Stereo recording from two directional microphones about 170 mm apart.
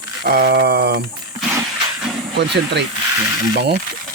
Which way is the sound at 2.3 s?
90° right.